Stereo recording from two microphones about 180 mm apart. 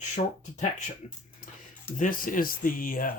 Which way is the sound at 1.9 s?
50° left (ahead or behind).